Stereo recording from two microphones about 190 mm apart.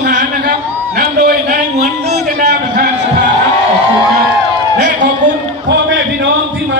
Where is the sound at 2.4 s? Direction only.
60° right (ahead or behind).